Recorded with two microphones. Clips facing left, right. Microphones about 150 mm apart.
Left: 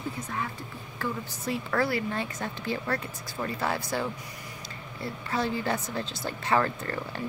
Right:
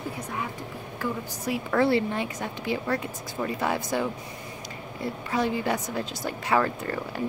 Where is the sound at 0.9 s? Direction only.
10° right (ahead or behind).